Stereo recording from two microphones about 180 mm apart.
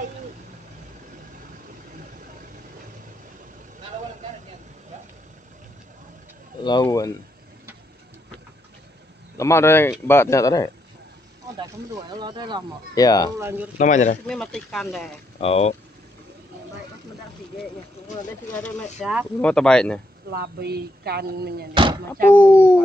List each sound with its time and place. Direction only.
6.6 s speech: 25° left (ahead or behind)
9.4 s speech: 15° left (ahead or behind)
12.1 s speech: 25° right (ahead or behind)
12.9 s speech: 20° left (ahead or behind)
13.4 s speech: 10° right (ahead or behind)
13.7 s speech: 45° left (ahead or behind)
14.2 s speech: 5° left (ahead or behind)
15.4 s speech: 35° left (ahead or behind)
18.6 s speech: 5° left (ahead or behind)
20.2 s speech: 60° right (ahead or behind)
21.7 s speech: 25° right (ahead or behind)
22.3 s speech: 10° left (ahead or behind)